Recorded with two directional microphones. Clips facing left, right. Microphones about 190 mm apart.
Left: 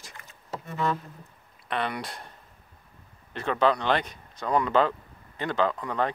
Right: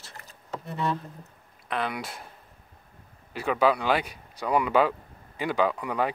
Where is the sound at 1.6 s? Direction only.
Centre (ahead or behind).